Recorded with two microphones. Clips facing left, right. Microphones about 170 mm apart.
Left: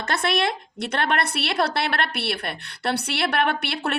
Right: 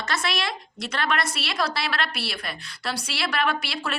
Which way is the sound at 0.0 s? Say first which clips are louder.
Left 5 dB; 55° left (ahead or behind).